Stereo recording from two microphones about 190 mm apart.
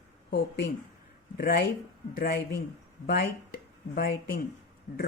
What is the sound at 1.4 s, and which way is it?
Speech, 55° left (ahead or behind).